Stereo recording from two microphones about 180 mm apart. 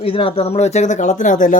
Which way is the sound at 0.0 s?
30° left (ahead or behind).